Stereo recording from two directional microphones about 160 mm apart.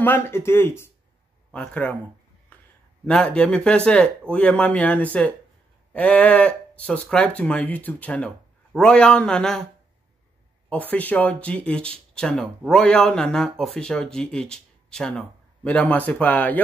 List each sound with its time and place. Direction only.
0.0 s speech: 15° left (ahead or behind)
3.1 s speech: 5° left (ahead or behind)
10.7 s speech: 10° left (ahead or behind)